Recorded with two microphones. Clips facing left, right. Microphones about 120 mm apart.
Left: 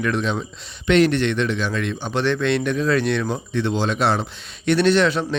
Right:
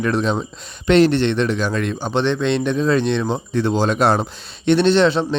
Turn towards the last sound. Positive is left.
turn(degrees=-30)  # may be behind; listen again after turning